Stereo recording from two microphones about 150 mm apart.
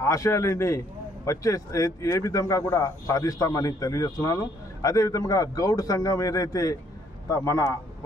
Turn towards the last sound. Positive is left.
turn(degrees=20)  # may be behind; listen again after turning